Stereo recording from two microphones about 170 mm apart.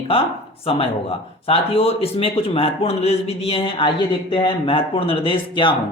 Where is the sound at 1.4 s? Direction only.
35° left (ahead or behind).